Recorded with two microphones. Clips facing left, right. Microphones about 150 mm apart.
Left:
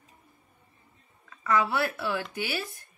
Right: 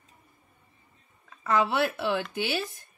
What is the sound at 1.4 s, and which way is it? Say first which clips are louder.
Speech: right 1 dB; 20° right (ahead or behind).